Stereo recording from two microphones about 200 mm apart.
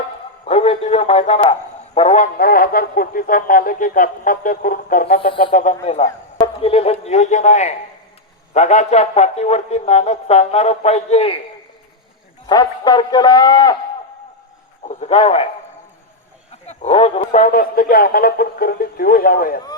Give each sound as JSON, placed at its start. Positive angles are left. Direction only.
{"t": 0.4, "sound": "speech", "side_deg": 30}
{"t": 2.0, "sound": "speech", "side_deg": 40}
{"t": 12.5, "sound": "a man's voice", "side_deg": 20}
{"t": 14.8, "sound": "a man's voice", "side_deg": 35}
{"t": 16.6, "sound": "speech", "side_deg": 30}